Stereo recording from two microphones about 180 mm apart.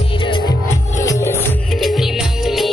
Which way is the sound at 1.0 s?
15° left (ahead or behind).